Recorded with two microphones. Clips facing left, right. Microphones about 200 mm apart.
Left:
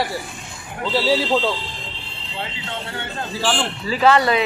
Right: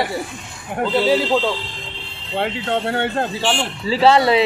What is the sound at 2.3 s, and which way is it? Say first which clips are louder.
Speech: right 10 dB; 60° right (ahead or behind).